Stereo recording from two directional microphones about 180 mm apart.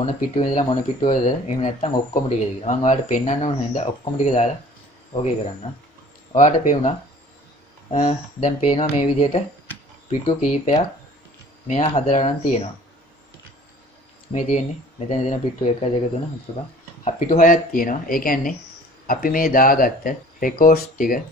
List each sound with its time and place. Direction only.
0.0 s speech: 35° left (ahead or behind)
7.9 s speech: 35° left (ahead or behind)
10.4 s speech: 40° left (ahead or behind)
14.3 s speech: 40° left (ahead or behind)
17.0 s speech: 45° left (ahead or behind)